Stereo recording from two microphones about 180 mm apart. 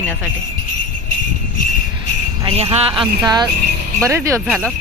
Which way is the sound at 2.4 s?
35° right (ahead or behind).